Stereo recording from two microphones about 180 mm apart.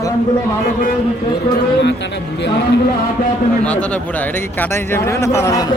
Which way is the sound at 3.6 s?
5° left (ahead or behind).